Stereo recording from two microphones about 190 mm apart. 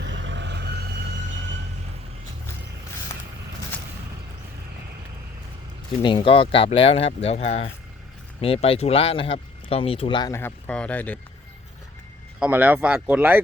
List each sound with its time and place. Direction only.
0.0 s vehicle: 70° right (ahead or behind)
6.0 s speech: 25° left (ahead or behind); by 11.2 s 10° left (ahead or behind)
12.4 s speech: 10° right (ahead or behind)